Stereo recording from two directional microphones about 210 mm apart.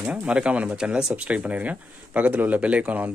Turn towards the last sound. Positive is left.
turn(degrees=-5)  # may be behind; listen again after turning